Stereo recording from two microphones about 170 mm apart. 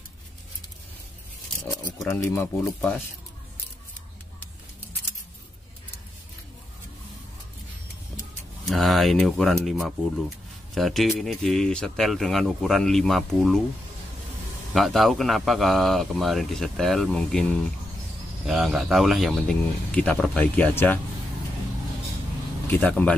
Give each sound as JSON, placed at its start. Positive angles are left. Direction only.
{"t": 1.9, "sound": "speech", "side_deg": 15}
{"t": 8.6, "sound": "a man's voice", "side_deg": 0}
{"t": 14.7, "sound": "a man's voice", "side_deg": 0}
{"t": 22.7, "sound": "speech", "side_deg": 10}